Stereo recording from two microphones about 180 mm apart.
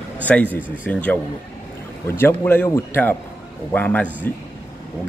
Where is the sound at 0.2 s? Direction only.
10° left (ahead or behind).